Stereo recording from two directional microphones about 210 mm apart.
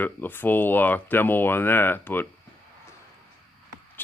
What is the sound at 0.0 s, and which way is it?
Speech, 10° left (ahead or behind).